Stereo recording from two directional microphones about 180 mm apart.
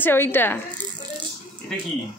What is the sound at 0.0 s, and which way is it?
Speech, 10° left (ahead or behind).